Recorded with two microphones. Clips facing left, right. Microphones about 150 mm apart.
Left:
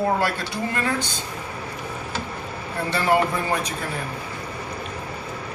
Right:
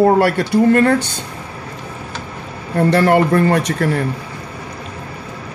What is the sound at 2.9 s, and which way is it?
Speech, 65° right (ahead or behind).